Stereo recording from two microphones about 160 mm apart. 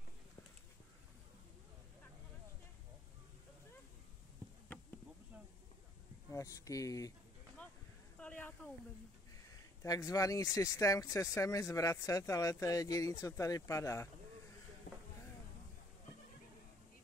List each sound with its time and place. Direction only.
6.3 s speech: 20° left (ahead or behind)
8.2 s speech: 10° left (ahead or behind)
9.4 s speech: 20° left (ahead or behind)
14.9 s a sound: 60° left (ahead or behind)